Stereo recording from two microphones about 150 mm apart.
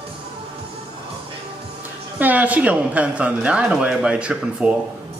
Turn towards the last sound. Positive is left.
turn(degrees=-5)  # may be behind; listen again after turning